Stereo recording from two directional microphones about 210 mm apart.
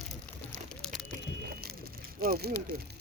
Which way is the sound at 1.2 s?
45° right (ahead or behind).